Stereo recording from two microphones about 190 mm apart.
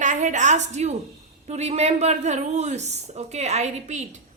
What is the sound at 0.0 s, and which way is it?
A woman's voice, 40° right (ahead or behind).